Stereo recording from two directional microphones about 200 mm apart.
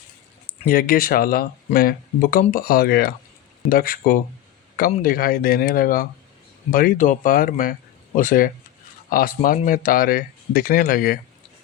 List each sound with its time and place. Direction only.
0.6 s speech: 45° left (ahead or behind)